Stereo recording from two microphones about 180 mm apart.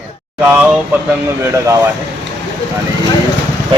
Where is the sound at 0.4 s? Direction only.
5° right (ahead or behind).